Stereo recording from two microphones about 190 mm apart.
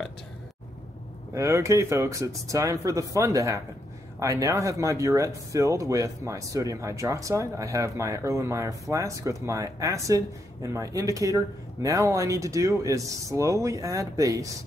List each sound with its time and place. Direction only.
1.3 s speech: 15° right (ahead or behind)